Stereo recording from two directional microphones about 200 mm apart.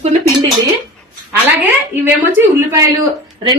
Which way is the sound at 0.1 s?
35° right (ahead or behind).